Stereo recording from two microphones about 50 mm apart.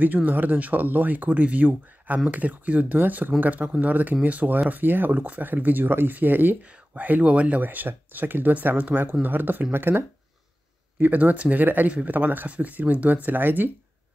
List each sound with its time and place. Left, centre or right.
0.0 s speech: right
7.6 s speech: right
11.0 s speech: right